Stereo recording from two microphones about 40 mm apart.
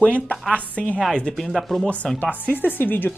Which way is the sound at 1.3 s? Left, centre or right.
Centre.